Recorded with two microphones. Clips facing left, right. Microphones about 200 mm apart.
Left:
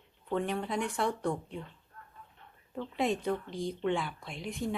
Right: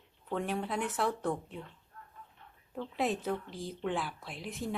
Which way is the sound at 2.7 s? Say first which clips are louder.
Left 2 dB; 5° right (ahead or behind).